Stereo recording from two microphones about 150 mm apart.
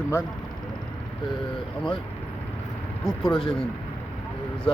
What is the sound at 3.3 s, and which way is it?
Speech, 35° left (ahead or behind).